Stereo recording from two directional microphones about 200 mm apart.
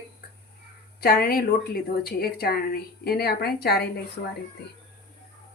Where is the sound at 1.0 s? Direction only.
50° left (ahead or behind).